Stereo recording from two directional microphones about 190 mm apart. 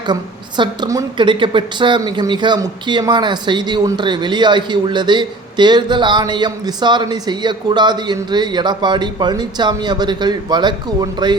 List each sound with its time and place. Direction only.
0.1 s a woman's voice: 25° right (ahead or behind)